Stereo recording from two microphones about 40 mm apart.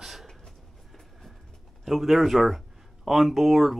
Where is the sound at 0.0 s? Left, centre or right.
Centre.